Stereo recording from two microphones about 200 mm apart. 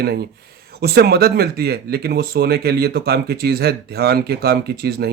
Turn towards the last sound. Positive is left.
turn(degrees=-50)  # may be behind; listen again after turning